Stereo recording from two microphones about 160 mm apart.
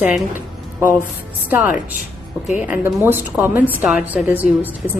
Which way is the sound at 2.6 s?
10° right (ahead or behind).